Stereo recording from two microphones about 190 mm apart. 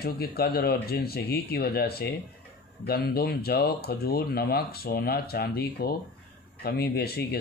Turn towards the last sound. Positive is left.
turn(degrees=55)  # may be behind; listen again after turning